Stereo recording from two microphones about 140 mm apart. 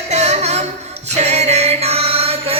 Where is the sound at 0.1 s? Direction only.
50° right (ahead or behind).